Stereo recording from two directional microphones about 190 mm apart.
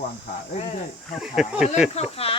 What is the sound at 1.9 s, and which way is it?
Speech, 30° left (ahead or behind).